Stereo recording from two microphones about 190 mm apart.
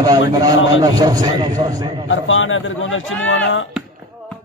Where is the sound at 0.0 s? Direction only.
20° right (ahead or behind).